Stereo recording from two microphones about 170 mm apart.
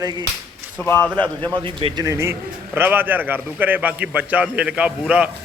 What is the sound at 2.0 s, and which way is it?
A man's voice, 15° right (ahead or behind).